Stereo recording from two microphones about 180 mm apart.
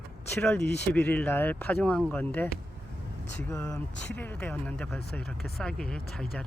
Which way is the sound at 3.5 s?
20° left (ahead or behind).